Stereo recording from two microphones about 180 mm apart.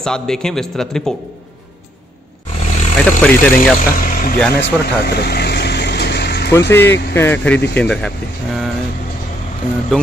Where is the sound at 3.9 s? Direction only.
50° left (ahead or behind).